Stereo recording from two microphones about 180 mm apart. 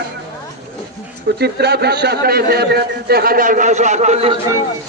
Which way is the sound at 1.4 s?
65° right (ahead or behind).